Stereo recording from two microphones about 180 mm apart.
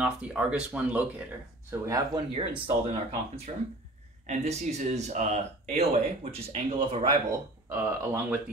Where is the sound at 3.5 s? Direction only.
40° right (ahead or behind).